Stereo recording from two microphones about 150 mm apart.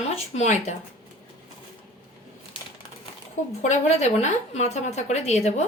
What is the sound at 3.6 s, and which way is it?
Speech, 50° left (ahead or behind).